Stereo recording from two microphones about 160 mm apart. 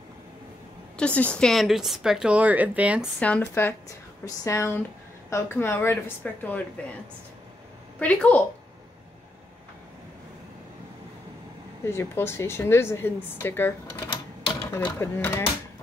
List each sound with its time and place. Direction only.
0.9 s speech: 10° left (ahead or behind); by 3.1 s 10° right (ahead or behind)
3.2 s a woman's voice: 10° left (ahead or behind)
8.0 s a woman's voice: 10° left (ahead or behind)
11.8 s a woman's voice: 15° left (ahead or behind)
14.7 s speech: 25° left (ahead or behind)
15.0 s a woman's voice: 15° left (ahead or behind)